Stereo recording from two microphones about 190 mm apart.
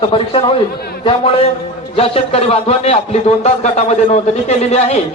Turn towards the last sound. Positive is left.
turn(degrees=35)  # may be behind; listen again after turning